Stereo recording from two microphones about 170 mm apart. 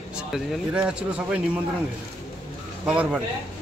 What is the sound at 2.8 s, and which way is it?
Speech, 5° right (ahead or behind).